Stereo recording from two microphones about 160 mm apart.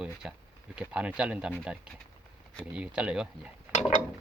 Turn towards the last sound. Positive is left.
turn(degrees=50)  # may be behind; listen again after turning